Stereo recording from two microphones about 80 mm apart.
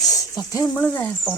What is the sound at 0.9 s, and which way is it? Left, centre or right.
Speech, left.